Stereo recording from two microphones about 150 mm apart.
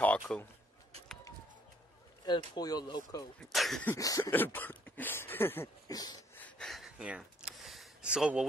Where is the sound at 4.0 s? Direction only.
25° left (ahead or behind).